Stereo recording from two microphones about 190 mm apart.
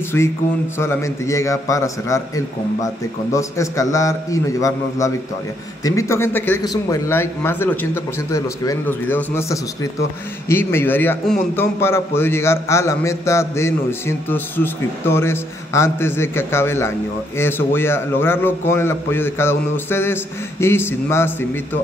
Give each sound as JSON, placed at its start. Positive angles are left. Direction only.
{"t": 0.7, "sound": "a man's voice", "side_deg": 15}